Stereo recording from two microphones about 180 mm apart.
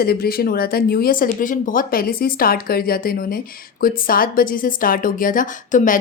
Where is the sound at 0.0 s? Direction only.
60° left (ahead or behind).